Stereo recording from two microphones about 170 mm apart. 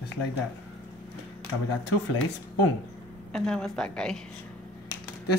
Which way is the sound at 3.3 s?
5° left (ahead or behind).